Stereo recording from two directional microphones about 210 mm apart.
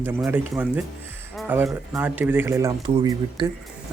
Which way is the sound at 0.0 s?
10° right (ahead or behind).